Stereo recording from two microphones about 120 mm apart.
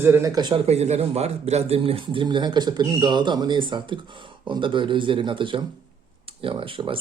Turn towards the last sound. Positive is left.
turn(degrees=-45)  # may be behind; listen again after turning